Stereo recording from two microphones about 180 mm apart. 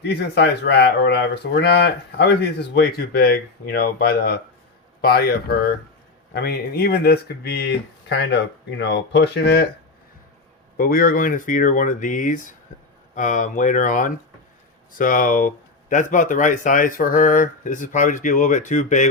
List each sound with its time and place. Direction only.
0.2 s speech: 70° left (ahead or behind)
8.8 s speech: 70° left (ahead or behind)
10.8 s speech: 55° left (ahead or behind)